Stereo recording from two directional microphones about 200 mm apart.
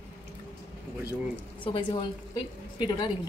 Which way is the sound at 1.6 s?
25° left (ahead or behind).